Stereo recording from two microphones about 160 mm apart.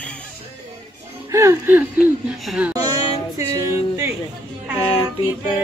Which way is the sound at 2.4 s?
5° right (ahead or behind).